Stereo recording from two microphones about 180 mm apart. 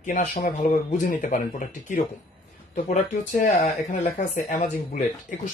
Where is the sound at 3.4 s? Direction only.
40° left (ahead or behind).